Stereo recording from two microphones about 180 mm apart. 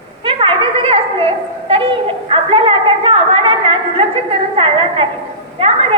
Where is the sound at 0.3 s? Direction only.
30° right (ahead or behind).